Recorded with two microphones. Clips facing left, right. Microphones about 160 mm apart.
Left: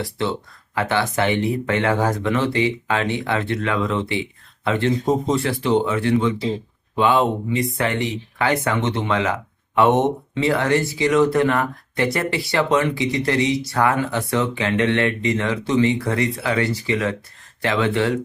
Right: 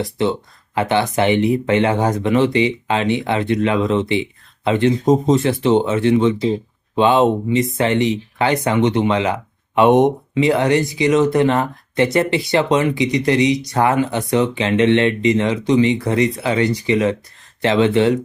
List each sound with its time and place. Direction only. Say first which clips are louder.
0.0 s speech: right 5 dB; 20° right (ahead or behind)